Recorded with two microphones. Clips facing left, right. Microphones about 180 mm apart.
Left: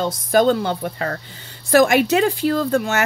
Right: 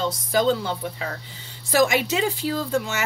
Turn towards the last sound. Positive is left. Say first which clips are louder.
# left 6 dB
turn(degrees=60)  # may be behind; listen again after turning